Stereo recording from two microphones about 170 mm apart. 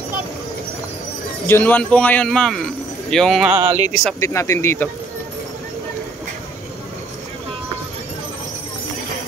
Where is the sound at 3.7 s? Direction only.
45° right (ahead or behind).